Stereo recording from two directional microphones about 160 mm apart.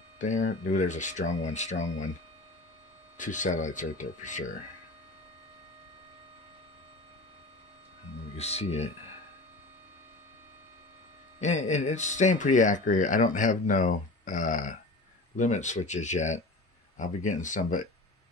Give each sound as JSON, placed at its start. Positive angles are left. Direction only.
{"t": 0.2, "sound": "speech", "side_deg": 50}
{"t": 3.2, "sound": "speech", "side_deg": 50}
{"t": 8.4, "sound": "speech", "side_deg": 40}
{"t": 11.3, "sound": "speech", "side_deg": 45}